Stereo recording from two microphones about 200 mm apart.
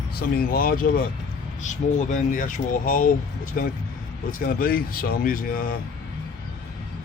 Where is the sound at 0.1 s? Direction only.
50° left (ahead or behind).